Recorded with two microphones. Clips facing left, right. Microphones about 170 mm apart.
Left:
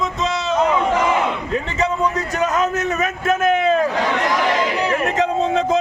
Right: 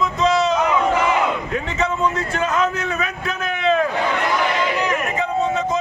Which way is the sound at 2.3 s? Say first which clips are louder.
Left 1 dB; 45° left (ahead or behind).